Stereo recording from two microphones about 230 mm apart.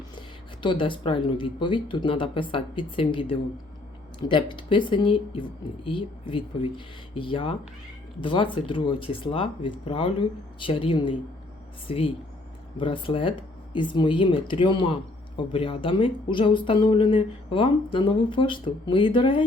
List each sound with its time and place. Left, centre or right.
0.6 s speech: left